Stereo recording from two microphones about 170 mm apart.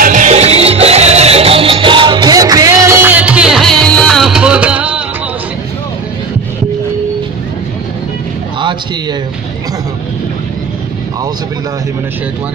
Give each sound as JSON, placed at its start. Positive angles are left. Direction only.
{"t": 0.0, "sound": "music", "side_deg": -45}